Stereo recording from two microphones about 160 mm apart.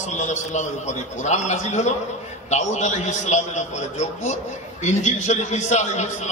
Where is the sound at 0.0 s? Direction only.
50° left (ahead or behind).